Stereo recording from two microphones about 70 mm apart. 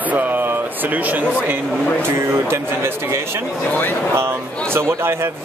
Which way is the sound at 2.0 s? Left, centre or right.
Right.